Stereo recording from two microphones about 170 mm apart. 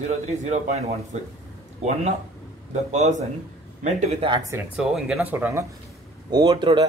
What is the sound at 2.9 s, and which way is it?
Speech, 40° right (ahead or behind).